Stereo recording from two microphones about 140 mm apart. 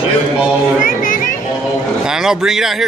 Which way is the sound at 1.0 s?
75° left (ahead or behind).